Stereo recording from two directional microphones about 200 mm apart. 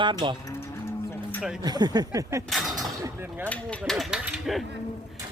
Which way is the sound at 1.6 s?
20° right (ahead or behind).